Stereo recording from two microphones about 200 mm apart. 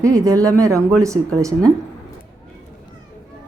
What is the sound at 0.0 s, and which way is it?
Speech, 15° right (ahead or behind).